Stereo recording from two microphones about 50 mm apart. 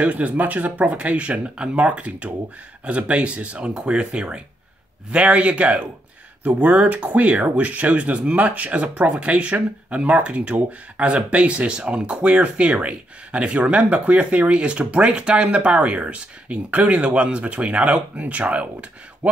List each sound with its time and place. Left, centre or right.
0.0 s speech: right